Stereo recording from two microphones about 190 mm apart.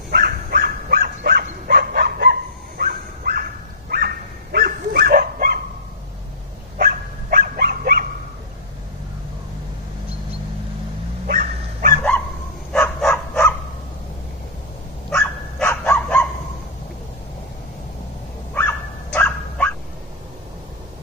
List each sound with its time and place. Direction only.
0.1 s dog: 50° right (ahead or behind)
6.8 s dog: 50° right (ahead or behind)
11.2 s dog: 50° right (ahead or behind)
12.7 s dog: 10° left (ahead or behind)
15.0 s dog: 5° left (ahead or behind)
18.5 s dog: 10° left (ahead or behind)